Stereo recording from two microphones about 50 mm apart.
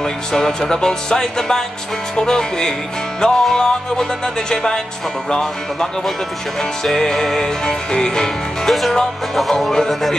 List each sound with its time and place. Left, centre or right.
0.0 s music: centre
8.6 s music: centre